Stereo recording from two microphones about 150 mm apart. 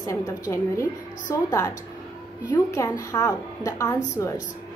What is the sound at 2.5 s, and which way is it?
A woman's voice, 25° left (ahead or behind).